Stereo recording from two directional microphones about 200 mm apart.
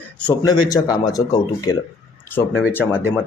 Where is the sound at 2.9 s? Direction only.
5° right (ahead or behind).